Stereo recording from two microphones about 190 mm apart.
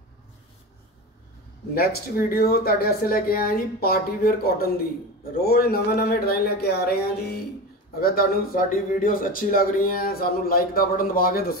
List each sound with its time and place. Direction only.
1.8 s a man's voice: 50° left (ahead or behind)